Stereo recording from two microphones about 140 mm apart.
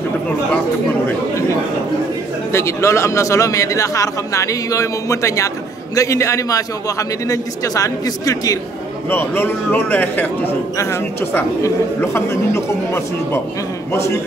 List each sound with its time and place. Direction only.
2.5 s a man's voice: 20° left (ahead or behind)